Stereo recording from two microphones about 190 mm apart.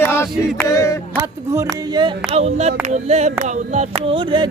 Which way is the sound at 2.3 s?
35° right (ahead or behind).